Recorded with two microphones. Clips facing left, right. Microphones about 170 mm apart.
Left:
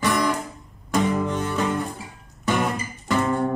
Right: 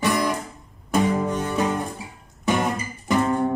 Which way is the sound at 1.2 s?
15° right (ahead or behind).